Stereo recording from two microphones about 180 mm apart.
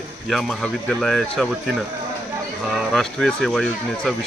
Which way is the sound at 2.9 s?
Centre (ahead or behind).